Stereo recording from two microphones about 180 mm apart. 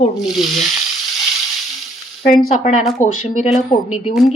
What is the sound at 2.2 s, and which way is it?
A woman's voice, 50° left (ahead or behind).